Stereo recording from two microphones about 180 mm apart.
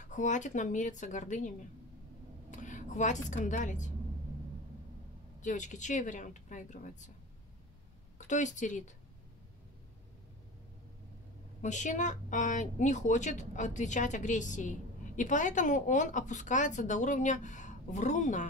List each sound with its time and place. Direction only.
0.0 s a woman's voice: 45° left (ahead or behind)
2.5 s speech: 45° left (ahead or behind)
5.4 s a woman's voice: 45° left (ahead or behind)
8.3 s a woman's voice: 40° left (ahead or behind)
11.6 s a woman's voice: 45° left (ahead or behind)